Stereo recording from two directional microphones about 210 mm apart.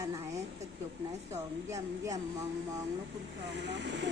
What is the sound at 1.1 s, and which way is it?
Speech, 30° right (ahead or behind).